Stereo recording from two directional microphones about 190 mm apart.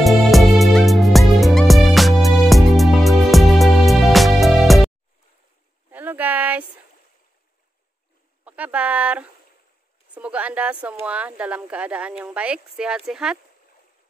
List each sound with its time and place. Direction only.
0.0 s music: centre (ahead or behind)
5.9 s a sound: 10° right (ahead or behind)
8.5 s speech: 10° right (ahead or behind)